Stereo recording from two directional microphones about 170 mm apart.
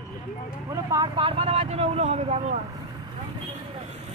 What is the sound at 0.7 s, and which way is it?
Speech, 20° right (ahead or behind).